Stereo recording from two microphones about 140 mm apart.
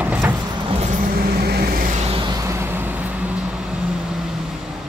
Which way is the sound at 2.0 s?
35° right (ahead or behind).